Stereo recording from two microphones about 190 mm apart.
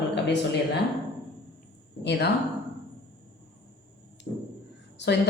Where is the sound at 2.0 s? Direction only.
60° left (ahead or behind).